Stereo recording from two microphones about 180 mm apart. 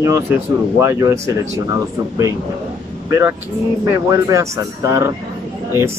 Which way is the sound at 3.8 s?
15° right (ahead or behind).